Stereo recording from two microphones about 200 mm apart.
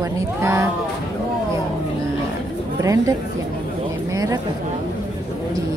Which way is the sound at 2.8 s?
15° right (ahead or behind).